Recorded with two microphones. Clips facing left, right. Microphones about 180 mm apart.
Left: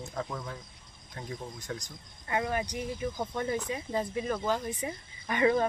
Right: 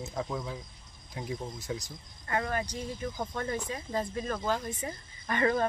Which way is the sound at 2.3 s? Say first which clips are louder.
Left 1 dB; 15° left (ahead or behind).